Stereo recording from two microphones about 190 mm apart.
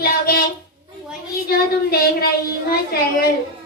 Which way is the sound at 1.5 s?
55° left (ahead or behind).